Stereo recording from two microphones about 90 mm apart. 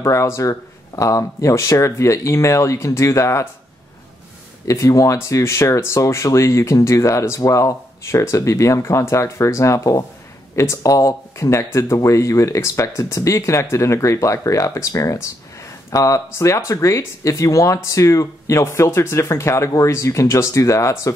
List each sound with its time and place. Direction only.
0.0 s speech: 35° left (ahead or behind)
4.6 s speech: 35° left (ahead or behind)